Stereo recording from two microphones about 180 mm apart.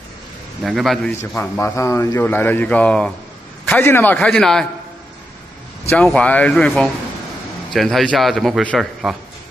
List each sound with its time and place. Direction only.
0.7 s a man's voice: centre (ahead or behind)
5.9 s a man's voice: 10° left (ahead or behind)